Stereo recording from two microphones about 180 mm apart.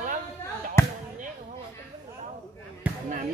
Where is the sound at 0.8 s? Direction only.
15° left (ahead or behind).